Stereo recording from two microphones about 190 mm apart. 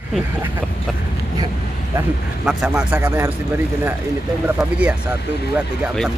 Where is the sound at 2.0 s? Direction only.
5° right (ahead or behind).